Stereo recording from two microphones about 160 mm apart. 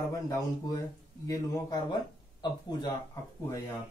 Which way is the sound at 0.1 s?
20° left (ahead or behind).